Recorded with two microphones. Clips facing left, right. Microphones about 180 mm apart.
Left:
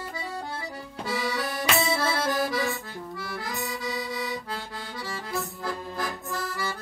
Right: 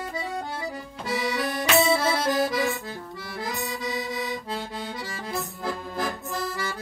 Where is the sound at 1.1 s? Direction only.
20° right (ahead or behind).